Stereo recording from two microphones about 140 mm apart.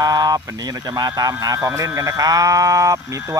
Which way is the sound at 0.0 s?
30° right (ahead or behind).